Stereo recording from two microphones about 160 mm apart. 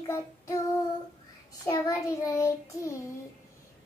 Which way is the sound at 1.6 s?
20° left (ahead or behind).